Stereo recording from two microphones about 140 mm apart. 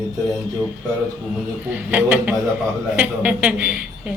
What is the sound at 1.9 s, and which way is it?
A woman's voice, 10° right (ahead or behind).